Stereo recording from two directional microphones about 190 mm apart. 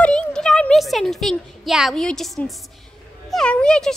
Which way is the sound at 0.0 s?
5° left (ahead or behind).